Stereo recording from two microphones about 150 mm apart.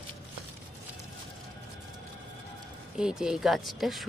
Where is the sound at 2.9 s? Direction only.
5° right (ahead or behind).